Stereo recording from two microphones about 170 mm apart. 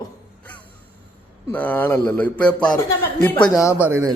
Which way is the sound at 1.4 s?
10° left (ahead or behind).